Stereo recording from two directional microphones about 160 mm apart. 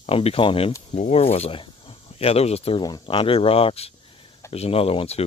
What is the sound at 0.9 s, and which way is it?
Speech, 45° left (ahead or behind).